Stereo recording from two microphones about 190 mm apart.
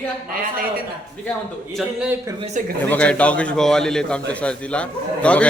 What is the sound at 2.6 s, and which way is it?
Speech, 40° right (ahead or behind).